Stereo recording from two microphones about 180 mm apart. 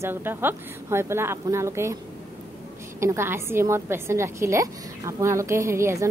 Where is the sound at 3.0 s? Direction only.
15° right (ahead or behind).